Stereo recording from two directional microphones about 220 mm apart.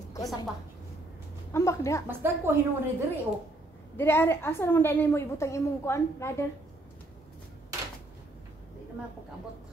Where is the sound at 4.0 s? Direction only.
10° left (ahead or behind).